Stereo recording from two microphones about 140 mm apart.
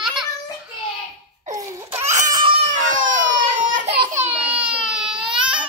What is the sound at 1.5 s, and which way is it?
Laughter, 20° right (ahead or behind).